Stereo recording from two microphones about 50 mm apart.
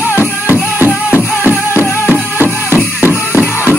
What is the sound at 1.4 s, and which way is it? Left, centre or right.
Music, right.